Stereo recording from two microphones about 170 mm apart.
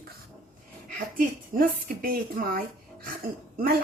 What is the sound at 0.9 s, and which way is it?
Speech, 55° right (ahead or behind).